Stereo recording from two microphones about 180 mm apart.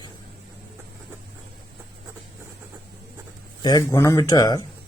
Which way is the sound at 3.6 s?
20° left (ahead or behind).